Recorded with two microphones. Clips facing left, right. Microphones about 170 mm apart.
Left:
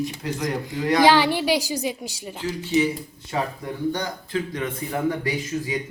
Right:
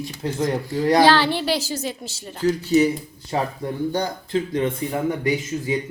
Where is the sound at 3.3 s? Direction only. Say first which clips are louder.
Right 3 dB; 30° right (ahead or behind).